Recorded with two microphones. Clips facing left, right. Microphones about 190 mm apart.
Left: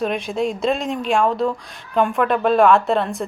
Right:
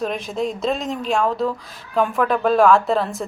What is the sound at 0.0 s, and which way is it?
A woman's voice, centre (ahead or behind).